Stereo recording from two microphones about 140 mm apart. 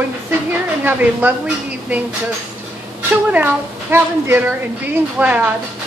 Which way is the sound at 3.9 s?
15° right (ahead or behind).